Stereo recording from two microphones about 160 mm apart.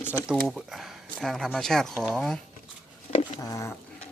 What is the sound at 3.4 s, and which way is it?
Speech, 20° left (ahead or behind).